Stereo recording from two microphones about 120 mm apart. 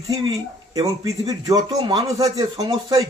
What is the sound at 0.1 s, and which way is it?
A man's voice, 30° right (ahead or behind).